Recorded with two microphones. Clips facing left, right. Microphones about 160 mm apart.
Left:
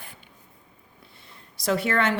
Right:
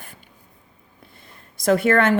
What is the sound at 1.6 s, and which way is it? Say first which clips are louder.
Speech: right 7 dB; 50° right (ahead or behind).